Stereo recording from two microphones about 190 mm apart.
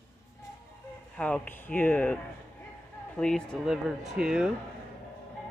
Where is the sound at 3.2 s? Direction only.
5° left (ahead or behind).